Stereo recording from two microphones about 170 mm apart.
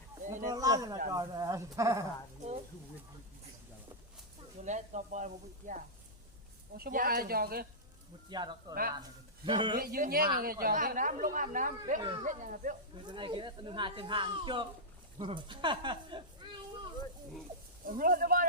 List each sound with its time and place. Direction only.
0.3 s a sound: 45° right (ahead or behind)
0.5 s a sound: 20° right (ahead or behind)
1.1 s speech: 20° right (ahead or behind)
4.6 s speech: 45° right (ahead or behind)
6.7 s a woman's voice: 60° right (ahead or behind)
8.3 s speech: 25° right (ahead or behind)
9.7 s a woman's voice: 60° right (ahead or behind)
13.1 s speech: 30° right (ahead or behind)
16.4 s a sound: 30° right (ahead or behind)
17.8 s a woman's voice: 55° right (ahead or behind)